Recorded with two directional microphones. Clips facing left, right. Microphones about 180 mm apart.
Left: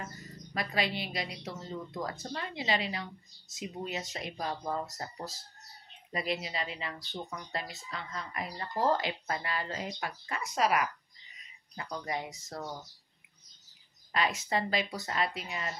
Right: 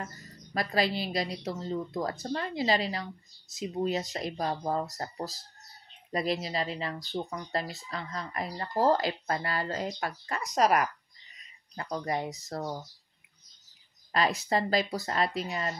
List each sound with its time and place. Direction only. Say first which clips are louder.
0.6 s speech: right 4 dB; 35° right (ahead or behind)
14.1 s speech: right 4 dB; 40° right (ahead or behind)